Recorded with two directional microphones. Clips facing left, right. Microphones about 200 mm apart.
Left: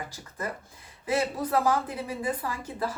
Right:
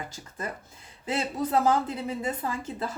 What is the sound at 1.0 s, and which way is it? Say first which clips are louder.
A woman's voice: left 1 dB; 25° right (ahead or behind).